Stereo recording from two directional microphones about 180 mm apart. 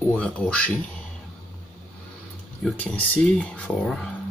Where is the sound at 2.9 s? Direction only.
5° left (ahead or behind).